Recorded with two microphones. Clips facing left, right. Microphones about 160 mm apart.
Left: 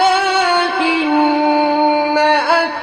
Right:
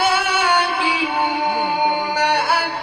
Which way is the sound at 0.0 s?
50° left (ahead or behind).